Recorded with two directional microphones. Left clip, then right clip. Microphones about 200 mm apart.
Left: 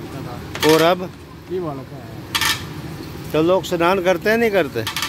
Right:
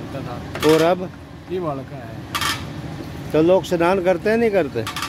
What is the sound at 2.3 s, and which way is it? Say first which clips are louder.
Dishes: left 3 dB; 50° right (ahead or behind).